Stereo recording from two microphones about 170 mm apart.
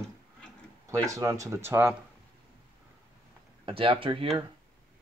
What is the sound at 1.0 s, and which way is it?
Speech, 20° right (ahead or behind).